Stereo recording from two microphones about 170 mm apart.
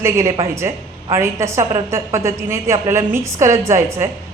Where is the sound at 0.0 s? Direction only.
15° right (ahead or behind).